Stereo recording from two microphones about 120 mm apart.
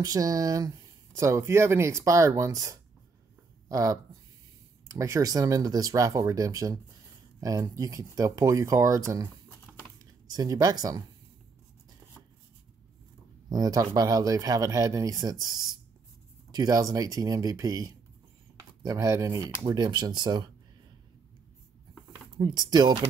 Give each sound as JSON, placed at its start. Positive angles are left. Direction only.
{"t": 0.0, "sound": "speech", "side_deg": -30}
{"t": 10.2, "sound": "speech", "side_deg": -30}
{"t": 13.5, "sound": "speech", "side_deg": -30}
{"t": 19.6, "sound": "speech", "side_deg": -35}
{"t": 22.4, "sound": "speech", "side_deg": -35}